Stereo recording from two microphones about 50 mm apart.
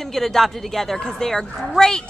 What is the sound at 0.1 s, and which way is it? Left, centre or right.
A woman's voice, centre.